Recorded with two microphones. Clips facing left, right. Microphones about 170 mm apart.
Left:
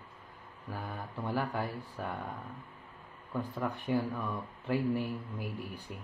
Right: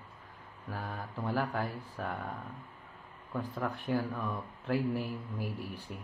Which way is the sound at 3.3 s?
Centre (ahead or behind).